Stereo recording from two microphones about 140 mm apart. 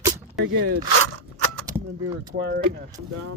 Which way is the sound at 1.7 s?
25° right (ahead or behind).